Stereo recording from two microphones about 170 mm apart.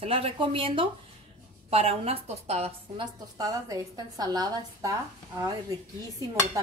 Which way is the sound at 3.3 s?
20° right (ahead or behind).